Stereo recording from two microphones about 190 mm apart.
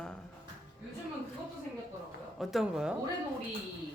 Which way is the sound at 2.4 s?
Centre (ahead or behind).